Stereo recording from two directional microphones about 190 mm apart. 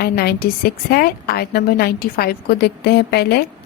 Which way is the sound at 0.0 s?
55° left (ahead or behind).